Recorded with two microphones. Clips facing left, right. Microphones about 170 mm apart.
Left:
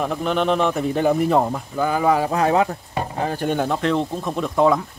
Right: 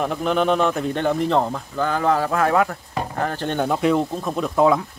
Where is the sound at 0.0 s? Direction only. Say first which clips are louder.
Right 1 dB; centre (ahead or behind).